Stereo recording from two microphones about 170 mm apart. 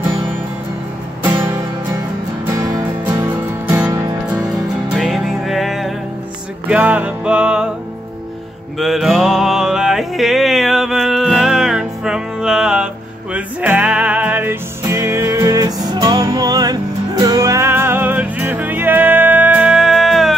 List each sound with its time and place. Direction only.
1.2 s music: 20° right (ahead or behind)
2.6 s music: 20° right (ahead or behind)
4.5 s music: centre (ahead or behind)
8.7 s music: centre (ahead or behind)